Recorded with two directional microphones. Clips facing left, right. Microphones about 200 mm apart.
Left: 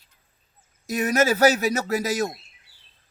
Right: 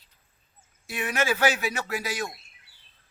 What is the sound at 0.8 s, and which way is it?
Speech, 40° left (ahead or behind).